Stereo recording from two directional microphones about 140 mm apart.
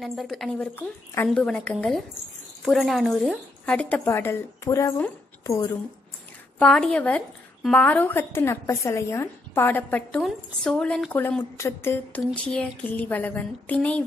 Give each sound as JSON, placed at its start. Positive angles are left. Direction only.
{"t": 0.0, "sound": "a woman's voice", "side_deg": 0}
{"t": 0.7, "sound": "a woman's voice", "side_deg": 15}
{"t": 6.6, "sound": "a woman's voice", "side_deg": 5}